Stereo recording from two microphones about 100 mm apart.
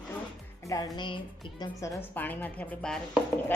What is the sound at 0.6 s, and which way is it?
Speech, 35° left (ahead or behind).